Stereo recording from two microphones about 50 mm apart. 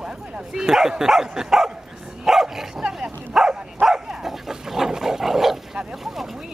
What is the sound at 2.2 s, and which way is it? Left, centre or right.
Dog, centre.